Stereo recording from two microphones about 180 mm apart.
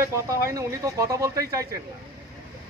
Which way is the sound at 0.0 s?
15° right (ahead or behind).